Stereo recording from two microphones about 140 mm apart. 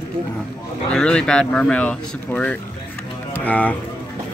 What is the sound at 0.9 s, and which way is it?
Speech, 5° left (ahead or behind).